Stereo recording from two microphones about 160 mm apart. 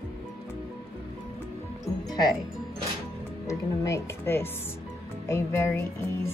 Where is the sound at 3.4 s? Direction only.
20° left (ahead or behind).